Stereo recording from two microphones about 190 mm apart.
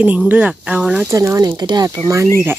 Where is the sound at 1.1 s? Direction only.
15° right (ahead or behind).